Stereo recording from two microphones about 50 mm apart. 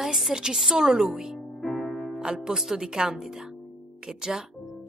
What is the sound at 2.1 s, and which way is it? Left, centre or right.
A woman's voice, centre.